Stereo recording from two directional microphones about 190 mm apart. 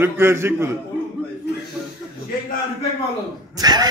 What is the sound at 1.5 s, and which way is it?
Chuckle, 60° left (ahead or behind).